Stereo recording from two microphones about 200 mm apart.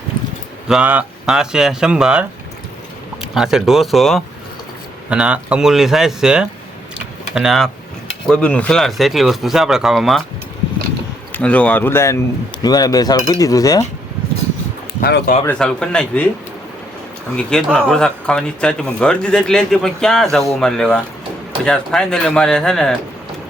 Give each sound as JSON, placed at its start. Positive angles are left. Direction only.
{"t": 0.7, "sound": "speech", "side_deg": -5}
{"t": 3.3, "sound": "speech", "side_deg": 0}
{"t": 11.3, "sound": "speech", "side_deg": 5}
{"t": 15.0, "sound": "speech", "side_deg": 50}
{"t": 15.4, "sound": "speech", "side_deg": 5}
{"t": 17.3, "sound": "speech", "side_deg": 5}